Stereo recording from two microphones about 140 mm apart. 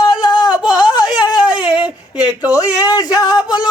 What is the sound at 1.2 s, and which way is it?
Speech, 30° left (ahead or behind).